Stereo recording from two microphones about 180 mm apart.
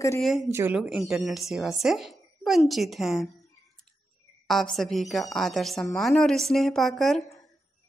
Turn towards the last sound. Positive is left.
turn(degrees=0)  # may be behind; listen again after turning